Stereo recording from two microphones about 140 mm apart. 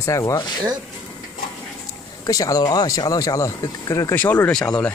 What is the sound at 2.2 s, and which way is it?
Speech, 25° left (ahead or behind).